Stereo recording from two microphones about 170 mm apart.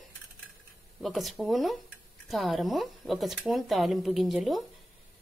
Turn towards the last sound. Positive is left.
turn(degrees=0)  # may be behind; listen again after turning